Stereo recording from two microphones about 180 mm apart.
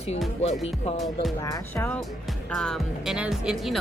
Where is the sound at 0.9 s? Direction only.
Centre (ahead or behind).